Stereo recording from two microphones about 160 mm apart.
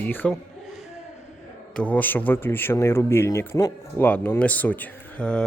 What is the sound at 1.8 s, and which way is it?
Speech, 10° left (ahead or behind).